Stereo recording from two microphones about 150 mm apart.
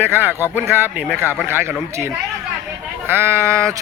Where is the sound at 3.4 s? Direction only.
20° right (ahead or behind).